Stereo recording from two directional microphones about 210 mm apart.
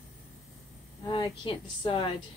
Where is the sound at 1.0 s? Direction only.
20° left (ahead or behind).